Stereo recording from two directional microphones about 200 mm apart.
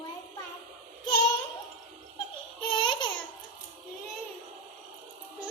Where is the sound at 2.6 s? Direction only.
25° left (ahead or behind).